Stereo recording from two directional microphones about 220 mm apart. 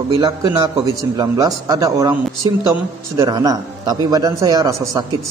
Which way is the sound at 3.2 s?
15° right (ahead or behind).